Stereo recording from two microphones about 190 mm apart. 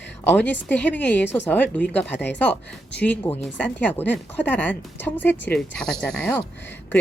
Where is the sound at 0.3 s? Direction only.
10° left (ahead or behind).